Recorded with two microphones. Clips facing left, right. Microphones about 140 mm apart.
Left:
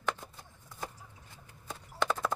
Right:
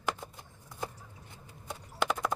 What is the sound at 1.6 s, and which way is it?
Clip-clop, 20° right (ahead or behind).